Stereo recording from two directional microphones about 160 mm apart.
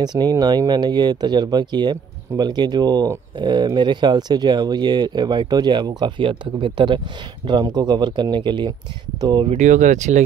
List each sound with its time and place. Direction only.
0.0 s speech: 25° right (ahead or behind)
9.5 s speech: 50° right (ahead or behind)